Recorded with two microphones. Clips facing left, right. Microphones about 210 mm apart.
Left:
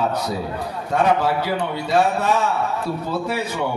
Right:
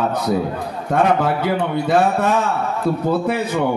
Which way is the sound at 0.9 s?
55° right (ahead or behind).